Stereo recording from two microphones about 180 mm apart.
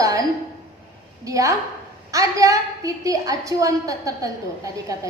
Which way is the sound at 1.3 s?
20° right (ahead or behind).